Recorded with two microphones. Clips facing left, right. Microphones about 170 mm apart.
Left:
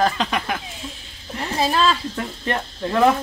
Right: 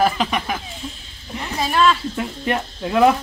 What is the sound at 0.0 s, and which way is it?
Speech, 5° right (ahead or behind).